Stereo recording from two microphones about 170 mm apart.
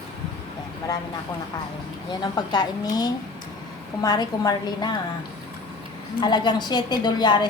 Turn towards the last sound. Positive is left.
turn(degrees=25)  # may be behind; listen again after turning